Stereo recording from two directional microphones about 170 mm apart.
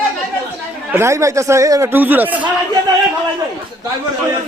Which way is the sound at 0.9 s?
15° right (ahead or behind).